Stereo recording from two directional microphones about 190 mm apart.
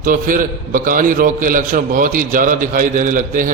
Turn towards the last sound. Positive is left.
turn(degrees=-45)  # may be behind; listen again after turning